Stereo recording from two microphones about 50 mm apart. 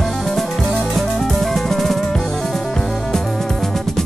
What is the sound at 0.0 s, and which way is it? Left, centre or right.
Music, centre.